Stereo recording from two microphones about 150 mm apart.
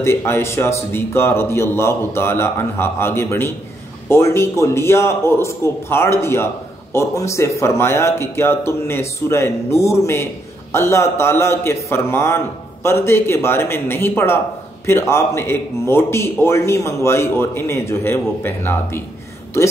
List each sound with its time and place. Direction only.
0.0 s a man's voice: 15° left (ahead or behind)